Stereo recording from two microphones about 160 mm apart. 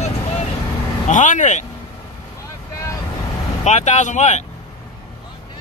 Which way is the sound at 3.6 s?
45° left (ahead or behind).